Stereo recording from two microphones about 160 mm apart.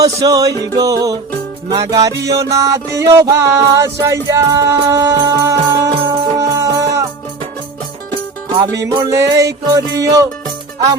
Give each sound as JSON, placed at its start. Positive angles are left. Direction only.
{"t": 0.0, "sound": "music", "side_deg": -25}
{"t": 8.8, "sound": "music", "side_deg": -30}
{"t": 9.0, "sound": "music", "side_deg": -20}